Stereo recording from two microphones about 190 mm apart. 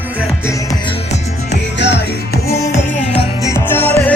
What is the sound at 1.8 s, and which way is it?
Music, 65° left (ahead or behind).